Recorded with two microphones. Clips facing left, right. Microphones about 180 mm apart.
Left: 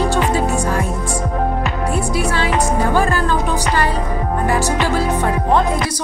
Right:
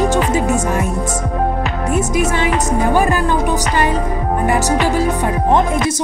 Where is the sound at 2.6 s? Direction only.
15° right (ahead or behind).